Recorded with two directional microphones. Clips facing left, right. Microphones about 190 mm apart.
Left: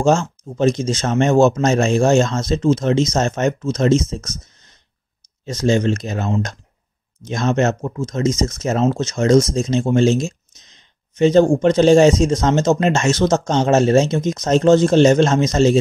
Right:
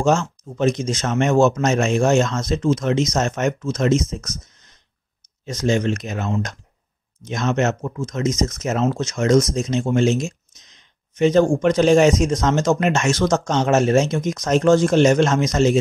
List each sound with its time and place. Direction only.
0.0 s speech: 30° left (ahead or behind)